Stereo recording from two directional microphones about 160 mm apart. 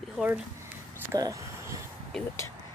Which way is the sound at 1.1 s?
20° right (ahead or behind).